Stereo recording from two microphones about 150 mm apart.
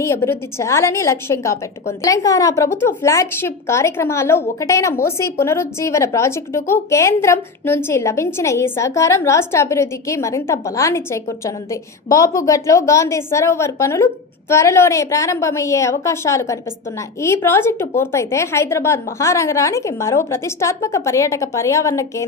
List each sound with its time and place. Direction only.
0.0 s a woman's voice: 15° left (ahead or behind)